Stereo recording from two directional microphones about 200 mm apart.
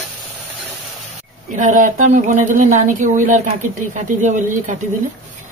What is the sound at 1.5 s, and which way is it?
Speech, 40° right (ahead or behind).